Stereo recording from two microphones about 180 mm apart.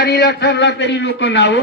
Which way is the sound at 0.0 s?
60° left (ahead or behind).